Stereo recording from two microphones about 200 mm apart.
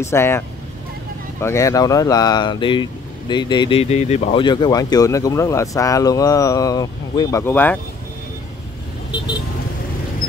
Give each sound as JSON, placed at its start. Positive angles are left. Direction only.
{"t": 0.0, "sound": "speech", "side_deg": 15}
{"t": 1.4, "sound": "speech", "side_deg": 15}